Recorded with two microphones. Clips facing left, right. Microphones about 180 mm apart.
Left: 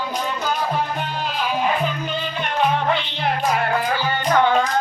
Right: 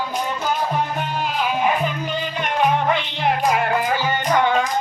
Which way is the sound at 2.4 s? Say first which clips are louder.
Right 1 dB; 10° right (ahead or behind).